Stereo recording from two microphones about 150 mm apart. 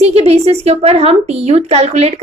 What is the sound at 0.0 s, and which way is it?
Speech, 45° right (ahead or behind).